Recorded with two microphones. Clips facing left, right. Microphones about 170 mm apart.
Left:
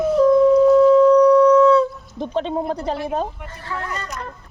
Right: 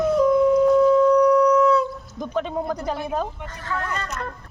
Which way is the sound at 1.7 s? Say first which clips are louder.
Left 5 dB; 30° left (ahead or behind).